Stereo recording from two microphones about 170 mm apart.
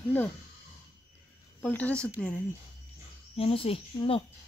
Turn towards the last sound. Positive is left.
turn(degrees=35)  # may be behind; listen again after turning